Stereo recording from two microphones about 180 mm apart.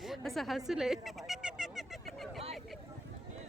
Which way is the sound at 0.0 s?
Centre (ahead or behind).